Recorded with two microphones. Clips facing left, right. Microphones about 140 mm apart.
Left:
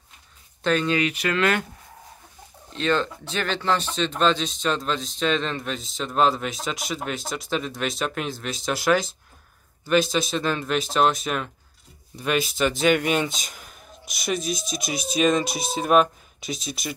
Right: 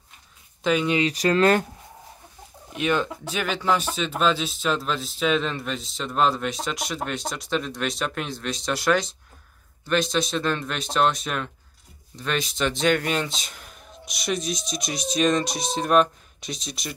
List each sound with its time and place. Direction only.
0.7 s speech: 10° right (ahead or behind)
0.9 s speech: 35° right (ahead or behind)
2.7 s speech: 15° right (ahead or behind); by 16.9 s centre (ahead or behind)